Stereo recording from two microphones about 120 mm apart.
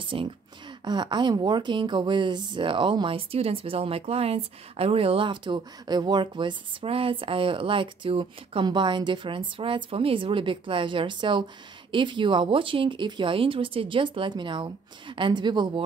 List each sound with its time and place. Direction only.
0.0 s speech: 45° right (ahead or behind)